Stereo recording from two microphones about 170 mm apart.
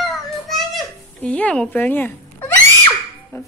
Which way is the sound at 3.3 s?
15° left (ahead or behind).